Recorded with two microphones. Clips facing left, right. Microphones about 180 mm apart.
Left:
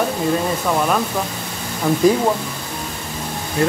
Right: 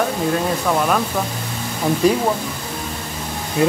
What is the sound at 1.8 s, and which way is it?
Speech, 20° right (ahead or behind).